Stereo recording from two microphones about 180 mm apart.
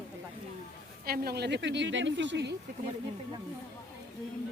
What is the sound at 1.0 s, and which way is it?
Speech, 60° right (ahead or behind).